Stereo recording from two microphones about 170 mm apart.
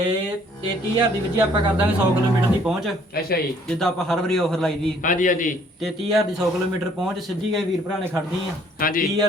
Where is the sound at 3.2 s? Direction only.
65° left (ahead or behind).